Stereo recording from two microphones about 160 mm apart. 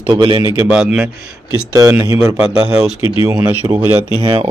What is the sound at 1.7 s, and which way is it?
Speech, 15° right (ahead or behind).